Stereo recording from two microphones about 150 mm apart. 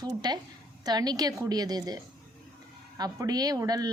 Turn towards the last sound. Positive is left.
turn(degrees=-25)  # may be behind; listen again after turning